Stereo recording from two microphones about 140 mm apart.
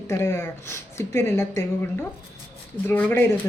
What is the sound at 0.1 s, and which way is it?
A woman's voice, 20° left (ahead or behind).